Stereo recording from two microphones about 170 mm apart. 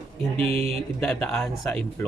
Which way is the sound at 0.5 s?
35° right (ahead or behind).